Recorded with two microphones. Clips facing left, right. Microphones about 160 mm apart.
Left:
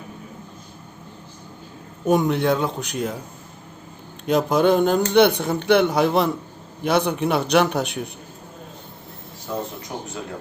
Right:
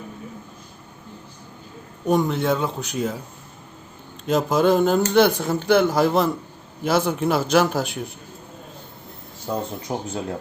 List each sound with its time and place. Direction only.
2.0 s speech: centre (ahead or behind)
4.3 s speech: centre (ahead or behind)
9.9 s speech: 30° right (ahead or behind)